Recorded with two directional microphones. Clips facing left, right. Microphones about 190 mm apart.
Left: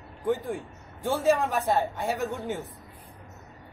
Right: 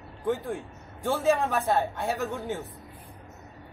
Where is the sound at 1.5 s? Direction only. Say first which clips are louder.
Even; 15° left (ahead or behind).